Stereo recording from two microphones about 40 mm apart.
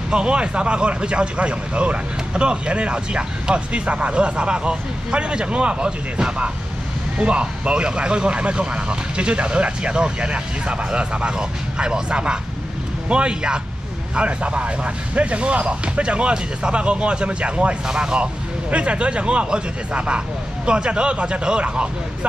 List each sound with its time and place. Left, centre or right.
0.1 s speech: right